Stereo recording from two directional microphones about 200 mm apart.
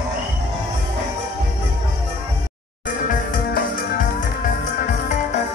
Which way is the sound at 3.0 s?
45° left (ahead or behind).